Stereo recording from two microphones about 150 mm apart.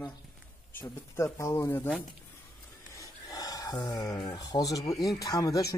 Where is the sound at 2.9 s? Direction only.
25° left (ahead or behind).